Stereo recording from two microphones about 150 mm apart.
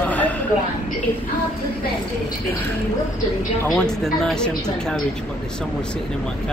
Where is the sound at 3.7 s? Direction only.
Centre (ahead or behind).